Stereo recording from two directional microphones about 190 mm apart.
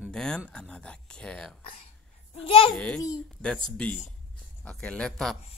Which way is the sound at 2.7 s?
5° left (ahead or behind).